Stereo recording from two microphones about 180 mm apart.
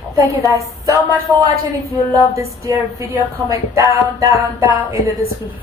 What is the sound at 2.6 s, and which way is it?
A woman's voice, 15° right (ahead or behind).